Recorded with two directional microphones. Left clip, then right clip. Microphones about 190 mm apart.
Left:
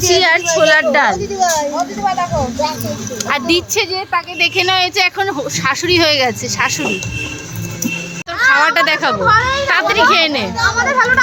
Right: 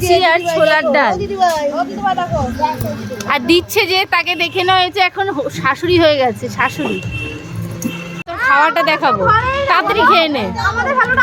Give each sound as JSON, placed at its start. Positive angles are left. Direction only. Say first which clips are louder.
{"t": 0.1, "sound": "a woman's voice", "louder": "right 1 dB", "side_deg": 0}
{"t": 1.4, "sound": "speech", "louder": "right 2 dB", "side_deg": -35}
{"t": 3.2, "sound": "speech", "louder": "right 2 dB", "side_deg": -10}
{"t": 8.6, "sound": "a woman's voice", "louder": "even", "side_deg": -5}
{"t": 9.2, "sound": "speech", "louder": "left 1 dB", "side_deg": -30}
{"t": 9.6, "sound": "speech", "louder": "right 2 dB", "side_deg": -5}
{"t": 10.6, "sound": "speech", "louder": "left 2 dB", "side_deg": -30}